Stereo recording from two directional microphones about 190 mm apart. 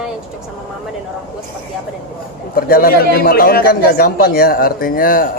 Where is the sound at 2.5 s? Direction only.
50° left (ahead or behind).